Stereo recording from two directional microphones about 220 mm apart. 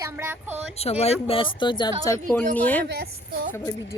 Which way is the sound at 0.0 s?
10° right (ahead or behind).